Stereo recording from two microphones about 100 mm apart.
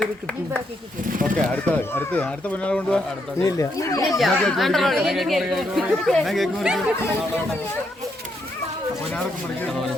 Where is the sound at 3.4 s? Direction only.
35° left (ahead or behind).